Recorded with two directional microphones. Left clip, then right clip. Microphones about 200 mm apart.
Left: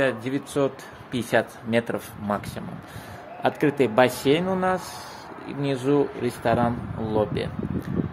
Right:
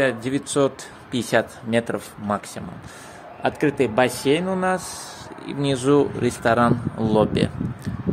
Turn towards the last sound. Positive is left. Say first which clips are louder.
# right 3 dB
turn(degrees=-40)  # may be behind; listen again after turning